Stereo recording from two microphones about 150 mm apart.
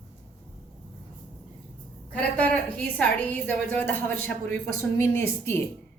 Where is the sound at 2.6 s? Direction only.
10° left (ahead or behind).